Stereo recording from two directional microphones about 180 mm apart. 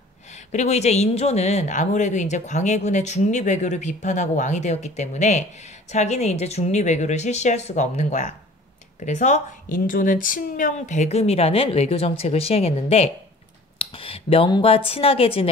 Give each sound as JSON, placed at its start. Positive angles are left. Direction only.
{"t": 0.3, "sound": "speech", "side_deg": 40}
{"t": 13.7, "sound": "speech", "side_deg": 30}